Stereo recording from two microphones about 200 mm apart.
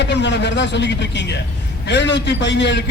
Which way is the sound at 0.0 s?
60° left (ahead or behind).